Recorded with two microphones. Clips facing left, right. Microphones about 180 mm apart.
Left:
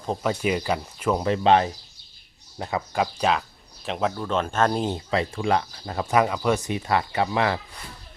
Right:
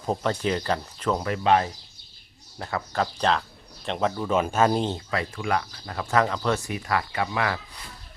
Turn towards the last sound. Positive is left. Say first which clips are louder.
# left 4 dB
turn(degrees=25)  # may be behind; listen again after turning